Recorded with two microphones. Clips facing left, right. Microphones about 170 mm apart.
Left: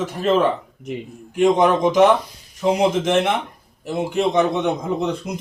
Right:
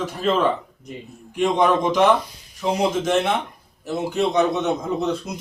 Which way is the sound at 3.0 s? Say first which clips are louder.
Left 2 dB; 20° left (ahead or behind).